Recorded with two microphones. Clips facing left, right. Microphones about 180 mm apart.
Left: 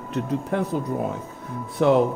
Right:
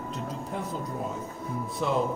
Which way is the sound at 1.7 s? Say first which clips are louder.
Left 10 dB; 70° left (ahead or behind).